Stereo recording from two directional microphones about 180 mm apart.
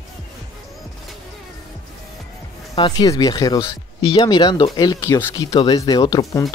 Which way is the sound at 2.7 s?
25° left (ahead or behind).